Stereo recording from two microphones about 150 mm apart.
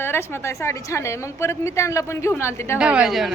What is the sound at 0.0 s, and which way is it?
A woman's voice, 15° left (ahead or behind).